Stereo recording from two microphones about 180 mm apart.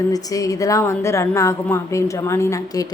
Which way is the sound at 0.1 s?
20° left (ahead or behind).